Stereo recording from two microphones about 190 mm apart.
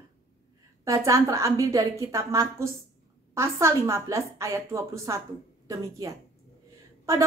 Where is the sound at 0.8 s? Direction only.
15° right (ahead or behind).